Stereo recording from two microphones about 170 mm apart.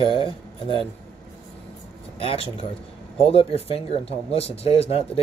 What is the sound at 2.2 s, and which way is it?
Speech, 30° left (ahead or behind).